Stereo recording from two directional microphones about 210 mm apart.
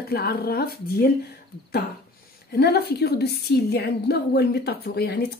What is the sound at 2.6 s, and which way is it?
A woman's voice, 50° left (ahead or behind).